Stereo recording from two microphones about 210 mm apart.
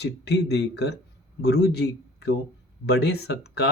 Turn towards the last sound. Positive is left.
turn(degrees=50)  # may be behind; listen again after turning